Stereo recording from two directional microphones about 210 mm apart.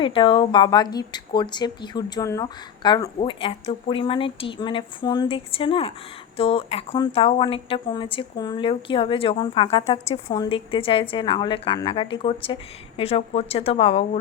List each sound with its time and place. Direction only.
0.0 s speech: 25° left (ahead or behind)